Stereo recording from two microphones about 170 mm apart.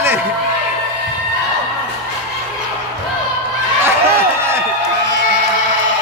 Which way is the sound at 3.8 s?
15° right (ahead or behind).